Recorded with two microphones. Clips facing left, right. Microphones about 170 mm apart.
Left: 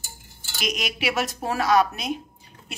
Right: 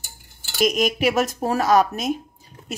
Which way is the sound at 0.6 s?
45° right (ahead or behind).